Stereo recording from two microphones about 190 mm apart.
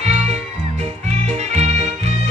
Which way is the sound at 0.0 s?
35° right (ahead or behind).